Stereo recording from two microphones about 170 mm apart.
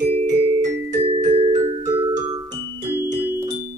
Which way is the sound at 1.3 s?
30° right (ahead or behind).